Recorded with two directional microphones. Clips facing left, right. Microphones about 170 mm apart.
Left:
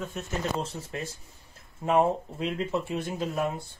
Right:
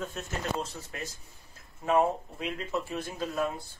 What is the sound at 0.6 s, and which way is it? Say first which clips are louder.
Speech: left 4 dB; 30° left (ahead or behind).